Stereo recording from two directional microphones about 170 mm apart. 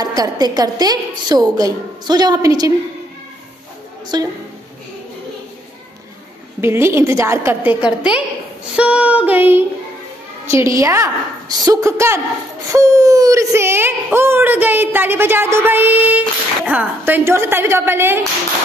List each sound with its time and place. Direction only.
0.0 s a woman's voice: 20° right (ahead or behind)
4.1 s a woman's voice: 25° right (ahead or behind)
6.6 s speech: 15° right (ahead or behind)